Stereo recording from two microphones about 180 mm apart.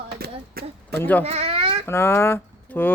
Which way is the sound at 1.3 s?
35° right (ahead or behind).